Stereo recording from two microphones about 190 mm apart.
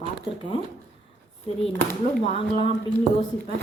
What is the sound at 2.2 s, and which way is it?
Speech, 30° left (ahead or behind).